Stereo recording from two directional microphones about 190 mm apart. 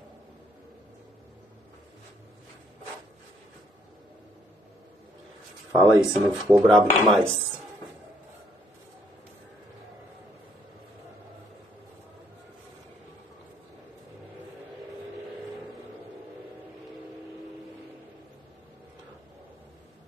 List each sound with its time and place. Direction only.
5.7 s speech: 10° right (ahead or behind)